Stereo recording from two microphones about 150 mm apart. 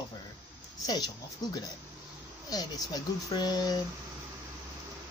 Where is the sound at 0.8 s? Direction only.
25° left (ahead or behind).